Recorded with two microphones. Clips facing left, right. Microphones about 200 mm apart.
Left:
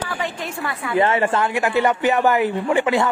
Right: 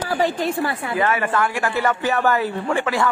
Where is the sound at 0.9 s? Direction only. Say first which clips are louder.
Left 4 dB; 25° left (ahead or behind).